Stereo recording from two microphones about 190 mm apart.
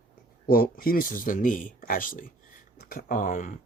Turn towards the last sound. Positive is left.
turn(degrees=40)  # may be behind; listen again after turning